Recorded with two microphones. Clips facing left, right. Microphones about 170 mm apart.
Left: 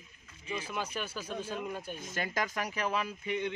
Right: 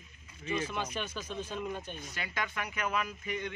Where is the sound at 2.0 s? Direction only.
45° left (ahead or behind); by 3.5 s 25° left (ahead or behind).